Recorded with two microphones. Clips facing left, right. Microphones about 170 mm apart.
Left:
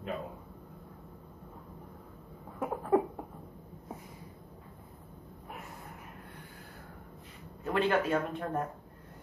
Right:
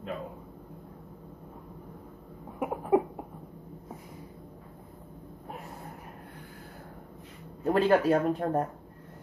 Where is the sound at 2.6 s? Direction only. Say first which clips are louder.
Right 2 dB; 15° right (ahead or behind).